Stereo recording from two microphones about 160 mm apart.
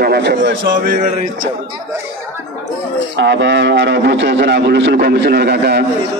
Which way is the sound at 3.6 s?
90° right.